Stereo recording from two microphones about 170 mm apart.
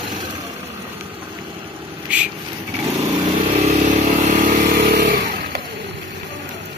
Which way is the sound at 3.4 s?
40° right (ahead or behind).